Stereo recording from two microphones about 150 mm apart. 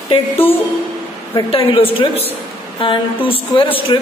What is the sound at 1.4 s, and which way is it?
A woman's voice, 35° left (ahead or behind).